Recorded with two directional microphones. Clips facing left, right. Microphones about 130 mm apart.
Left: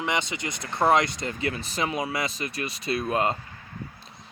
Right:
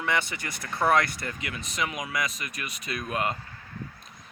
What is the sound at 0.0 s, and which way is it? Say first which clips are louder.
Speech: left 1 dB; 20° left (ahead or behind).